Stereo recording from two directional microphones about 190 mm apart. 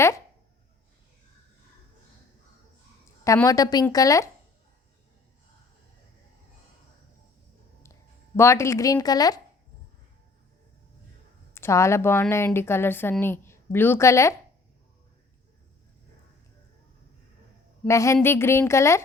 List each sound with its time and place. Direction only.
3.2 s a woman's voice: 15° left (ahead or behind)
8.4 s a woman's voice: 15° left (ahead or behind)
11.5 s a woman's voice: 15° left (ahead or behind)
17.8 s a woman's voice: 15° left (ahead or behind)